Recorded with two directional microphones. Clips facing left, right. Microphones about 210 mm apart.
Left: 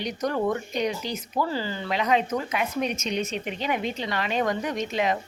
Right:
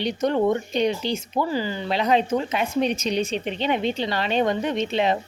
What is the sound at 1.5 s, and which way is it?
Speech, 15° right (ahead or behind).